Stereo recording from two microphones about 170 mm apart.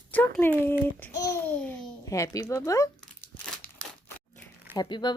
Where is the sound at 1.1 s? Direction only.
20° left (ahead or behind).